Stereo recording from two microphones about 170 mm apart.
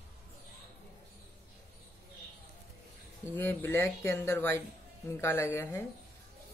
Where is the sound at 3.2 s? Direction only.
10° left (ahead or behind).